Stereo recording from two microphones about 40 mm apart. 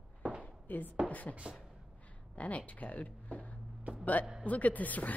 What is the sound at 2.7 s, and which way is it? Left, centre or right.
A woman's voice, left.